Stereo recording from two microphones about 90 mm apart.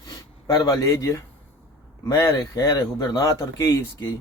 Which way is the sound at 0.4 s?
45° left (ahead or behind).